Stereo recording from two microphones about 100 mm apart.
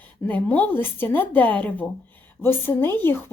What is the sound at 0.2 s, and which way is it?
A woman's voice, 25° left (ahead or behind).